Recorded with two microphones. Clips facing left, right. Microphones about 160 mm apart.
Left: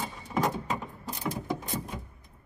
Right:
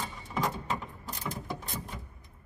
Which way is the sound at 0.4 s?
15° left (ahead or behind).